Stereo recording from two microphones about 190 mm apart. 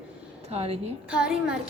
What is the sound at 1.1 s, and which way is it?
Speech, 5° right (ahead or behind).